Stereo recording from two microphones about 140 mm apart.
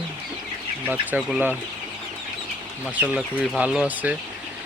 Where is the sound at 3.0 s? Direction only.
5° right (ahead or behind).